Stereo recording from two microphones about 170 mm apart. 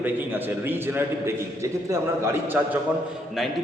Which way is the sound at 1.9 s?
15° right (ahead or behind).